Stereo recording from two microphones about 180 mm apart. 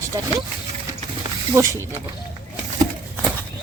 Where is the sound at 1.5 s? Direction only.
15° right (ahead or behind).